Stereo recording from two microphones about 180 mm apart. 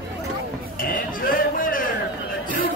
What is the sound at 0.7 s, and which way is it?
Music, 50° left (ahead or behind).